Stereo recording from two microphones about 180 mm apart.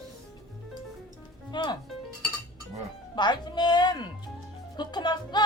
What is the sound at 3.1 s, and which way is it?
Music, 25° left (ahead or behind).